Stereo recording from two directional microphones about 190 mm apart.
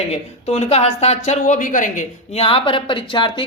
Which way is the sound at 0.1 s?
35° left (ahead or behind).